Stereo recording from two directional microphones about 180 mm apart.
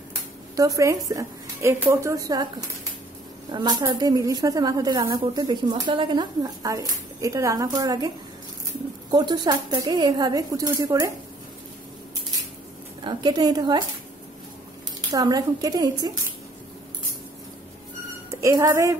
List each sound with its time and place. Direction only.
0.6 s a woman's voice: 20° right (ahead or behind)
3.5 s a woman's voice: 25° right (ahead or behind)
9.1 s a woman's voice: 25° right (ahead or behind)
13.0 s a woman's voice: 25° right (ahead or behind)
15.1 s a woman's voice: 20° right (ahead or behind)
18.3 s speech: 15° right (ahead or behind)